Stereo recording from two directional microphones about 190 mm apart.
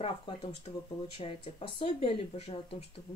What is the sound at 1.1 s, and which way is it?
Speech, 30° left (ahead or behind).